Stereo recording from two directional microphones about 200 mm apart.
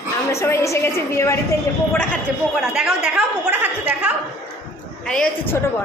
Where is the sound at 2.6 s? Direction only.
Centre (ahead or behind).